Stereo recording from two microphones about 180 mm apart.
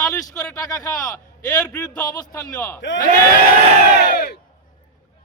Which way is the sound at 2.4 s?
20° left (ahead or behind).